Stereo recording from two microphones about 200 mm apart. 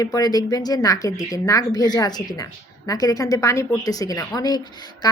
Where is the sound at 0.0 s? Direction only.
20° left (ahead or behind).